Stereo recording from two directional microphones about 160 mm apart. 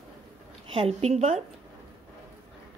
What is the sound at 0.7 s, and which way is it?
Speech, 40° right (ahead or behind).